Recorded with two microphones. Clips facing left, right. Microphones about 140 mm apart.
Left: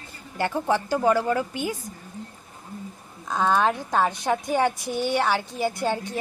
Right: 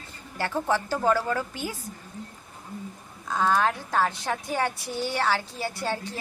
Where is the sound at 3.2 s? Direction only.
20° left (ahead or behind).